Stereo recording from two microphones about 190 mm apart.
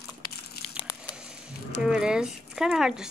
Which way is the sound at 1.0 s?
5° right (ahead or behind).